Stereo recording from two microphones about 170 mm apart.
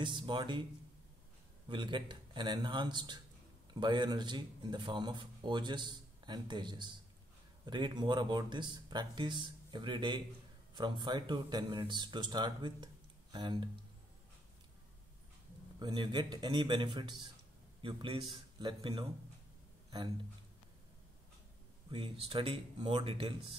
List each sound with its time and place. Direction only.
0.0 s a man's voice: 30° right (ahead or behind)
1.7 s a man's voice: 25° right (ahead or behind)
15.8 s a man's voice: 25° right (ahead or behind)
21.9 s speech: 30° right (ahead or behind)